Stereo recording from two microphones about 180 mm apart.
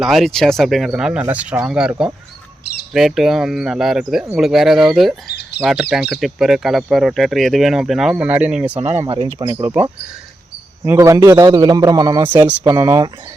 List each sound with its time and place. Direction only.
0.0 s a man's voice: centre (ahead or behind); by 12.3 s 25° right (ahead or behind)
12.3 s speech: 10° right (ahead or behind)
12.6 s a man's voice: 20° right (ahead or behind)